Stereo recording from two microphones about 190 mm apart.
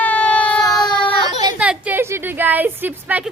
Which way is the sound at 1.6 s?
5° right (ahead or behind).